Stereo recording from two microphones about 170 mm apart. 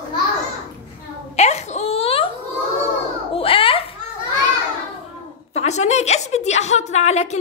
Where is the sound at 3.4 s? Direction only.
30° left (ahead or behind).